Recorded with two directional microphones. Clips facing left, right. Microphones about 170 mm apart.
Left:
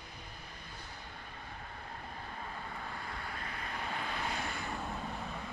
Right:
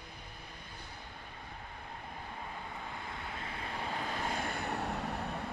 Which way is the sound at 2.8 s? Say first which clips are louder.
Even; 20° right (ahead or behind).